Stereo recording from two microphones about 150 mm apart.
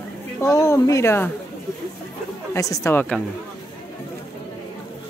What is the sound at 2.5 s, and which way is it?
Speech, 20° left (ahead or behind).